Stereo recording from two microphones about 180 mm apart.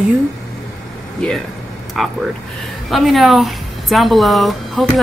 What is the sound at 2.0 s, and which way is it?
A woman's voice, centre (ahead or behind).